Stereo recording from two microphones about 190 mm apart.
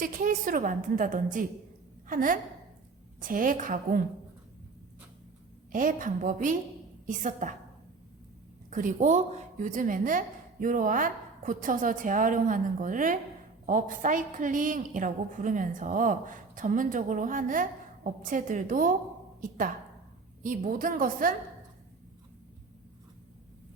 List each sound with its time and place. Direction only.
0.0 s a woman's voice: 45° right (ahead or behind)
5.7 s a woman's voice: 45° right (ahead or behind)
8.7 s a woman's voice: 40° right (ahead or behind)